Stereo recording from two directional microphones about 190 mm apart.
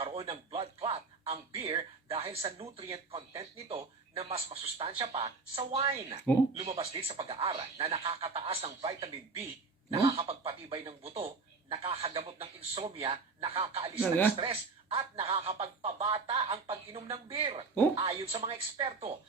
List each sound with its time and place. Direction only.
0.0 s speech: 30° right (ahead or behind)
14.0 s speech: 10° left (ahead or behind)
14.3 s speech: 30° right (ahead or behind)